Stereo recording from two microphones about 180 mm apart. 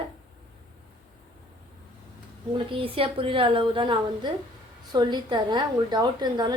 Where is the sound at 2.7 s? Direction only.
30° right (ahead or behind).